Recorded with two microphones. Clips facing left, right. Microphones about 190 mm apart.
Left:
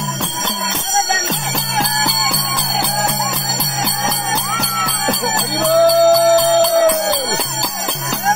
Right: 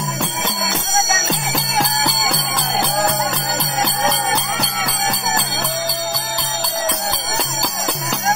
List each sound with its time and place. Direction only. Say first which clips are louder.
5.7 s music: left 14 dB; 65° left (ahead or behind)